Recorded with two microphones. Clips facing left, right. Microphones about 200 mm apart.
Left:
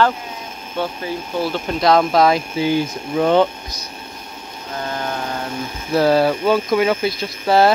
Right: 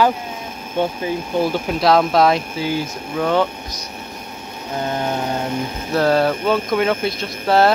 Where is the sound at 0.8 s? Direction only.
20° right (ahead or behind).